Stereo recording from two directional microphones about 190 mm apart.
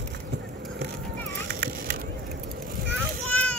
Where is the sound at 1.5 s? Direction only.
55° right (ahead or behind).